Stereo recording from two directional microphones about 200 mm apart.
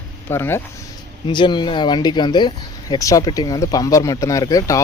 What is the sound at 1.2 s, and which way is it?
Speech, 25° left (ahead or behind).